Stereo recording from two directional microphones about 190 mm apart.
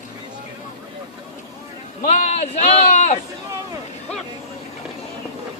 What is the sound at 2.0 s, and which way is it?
A man's voice, 35° left (ahead or behind).